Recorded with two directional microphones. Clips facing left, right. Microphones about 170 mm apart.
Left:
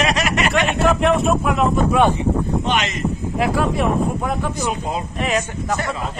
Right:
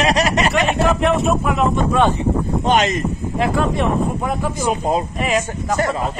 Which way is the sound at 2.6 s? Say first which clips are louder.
Right 5 dB; 45° right (ahead or behind).